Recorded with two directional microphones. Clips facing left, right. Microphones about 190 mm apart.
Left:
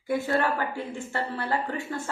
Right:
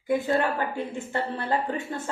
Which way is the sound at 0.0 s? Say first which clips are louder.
Right 2 dB; 20° right (ahead or behind).